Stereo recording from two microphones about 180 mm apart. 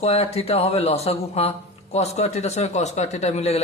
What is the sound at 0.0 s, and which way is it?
Speech, 35° left (ahead or behind).